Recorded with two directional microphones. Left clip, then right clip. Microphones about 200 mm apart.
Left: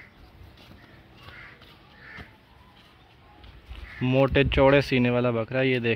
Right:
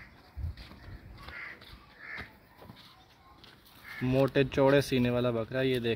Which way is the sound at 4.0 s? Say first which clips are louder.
Left 5 dB; 15° left (ahead or behind).